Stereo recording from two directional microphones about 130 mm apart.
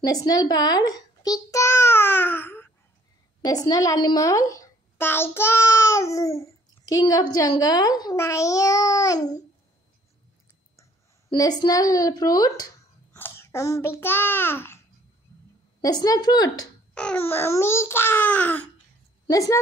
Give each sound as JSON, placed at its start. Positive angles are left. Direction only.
{"t": 0.0, "sound": "a sound", "side_deg": 30}
{"t": 3.4, "sound": "a child's voice", "side_deg": 30}
{"t": 11.3, "sound": "a child's voice", "side_deg": 30}
{"t": 15.8, "sound": "a child's voice", "side_deg": 30}
{"t": 16.9, "sound": "speech", "side_deg": 10}
{"t": 19.2, "sound": "a woman's voice", "side_deg": 25}